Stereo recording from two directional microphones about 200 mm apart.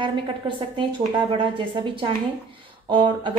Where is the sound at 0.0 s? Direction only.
25° right (ahead or behind).